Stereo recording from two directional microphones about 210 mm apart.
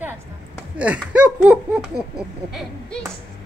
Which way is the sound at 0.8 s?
5° right (ahead or behind).